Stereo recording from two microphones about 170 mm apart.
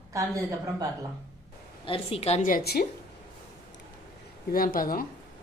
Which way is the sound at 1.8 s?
35° left (ahead or behind).